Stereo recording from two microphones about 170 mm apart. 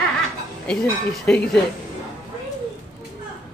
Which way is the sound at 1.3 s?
5° left (ahead or behind).